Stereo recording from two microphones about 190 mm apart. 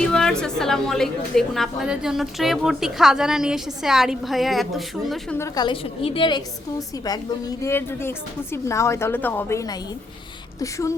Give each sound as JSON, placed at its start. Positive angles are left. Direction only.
{"t": 0.1, "sound": "a woman's voice", "side_deg": 5}
{"t": 5.4, "sound": "a woman's voice", "side_deg": 25}